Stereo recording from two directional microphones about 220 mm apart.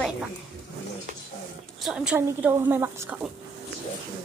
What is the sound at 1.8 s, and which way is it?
A woman's voice, 5° right (ahead or behind).